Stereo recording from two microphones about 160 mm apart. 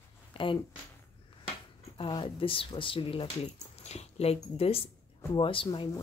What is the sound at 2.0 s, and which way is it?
Speech, 30° left (ahead or behind).